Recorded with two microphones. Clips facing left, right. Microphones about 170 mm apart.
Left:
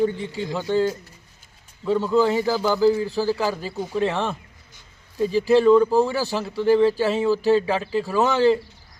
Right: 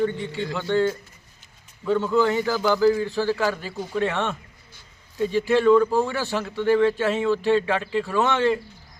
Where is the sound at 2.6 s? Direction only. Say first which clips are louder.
Right 1 dB; 5° left (ahead or behind).